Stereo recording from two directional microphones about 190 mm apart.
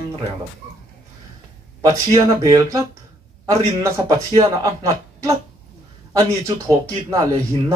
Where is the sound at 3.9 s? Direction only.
15° right (ahead or behind).